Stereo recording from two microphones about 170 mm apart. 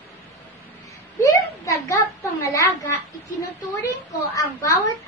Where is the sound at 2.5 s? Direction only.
20° left (ahead or behind).